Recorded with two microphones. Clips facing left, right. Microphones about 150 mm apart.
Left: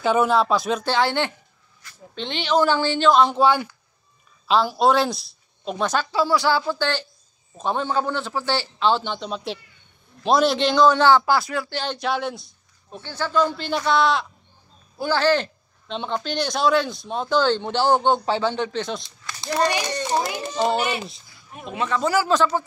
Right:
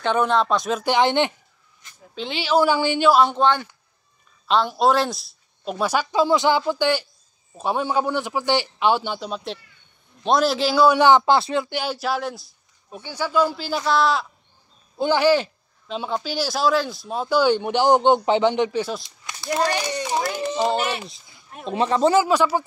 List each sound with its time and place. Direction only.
0.0 s a man's voice: 5° left (ahead or behind)
0.8 s a man's voice: 20° right (ahead or behind)
1.8 s a sound: 20° right (ahead or behind)
2.1 s speech: 5° right (ahead or behind); by 11.8 s 20° right (ahead or behind)
11.8 s a man's voice: 5° right (ahead or behind)
15.0 s speech: 15° right (ahead or behind)
19.2 s a sound: 20° right (ahead or behind)
19.9 s speech: 10° right (ahead or behind)
20.6 s speech: centre (ahead or behind)
21.6 s a man's voice: 30° right (ahead or behind)
22.2 s speech: 10° right (ahead or behind)